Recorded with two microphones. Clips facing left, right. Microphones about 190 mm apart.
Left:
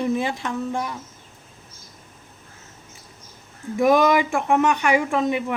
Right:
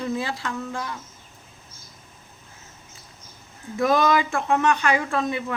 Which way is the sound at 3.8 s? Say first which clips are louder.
Left 3 dB; 15° left (ahead or behind).